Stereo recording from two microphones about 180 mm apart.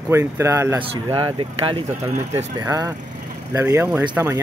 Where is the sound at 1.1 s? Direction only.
30° right (ahead or behind).